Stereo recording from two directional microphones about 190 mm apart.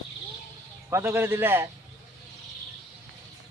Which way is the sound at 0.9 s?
15° right (ahead or behind).